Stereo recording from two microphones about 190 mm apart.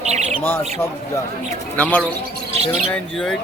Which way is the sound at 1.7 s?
10° left (ahead or behind).